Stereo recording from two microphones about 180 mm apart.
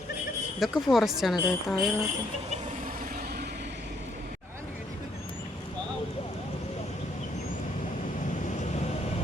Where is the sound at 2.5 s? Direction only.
45° right (ahead or behind); by 3.7 s 65° right (ahead or behind).